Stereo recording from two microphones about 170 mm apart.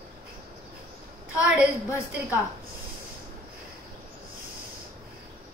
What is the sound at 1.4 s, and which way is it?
Speech, 10° right (ahead or behind).